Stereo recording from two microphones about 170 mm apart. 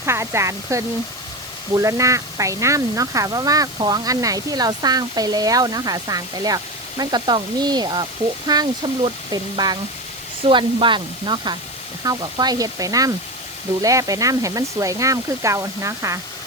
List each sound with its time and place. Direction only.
0.0 s speech: 15° right (ahead or behind)